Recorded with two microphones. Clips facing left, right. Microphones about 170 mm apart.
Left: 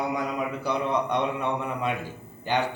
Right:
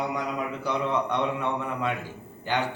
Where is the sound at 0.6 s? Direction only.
15° left (ahead or behind).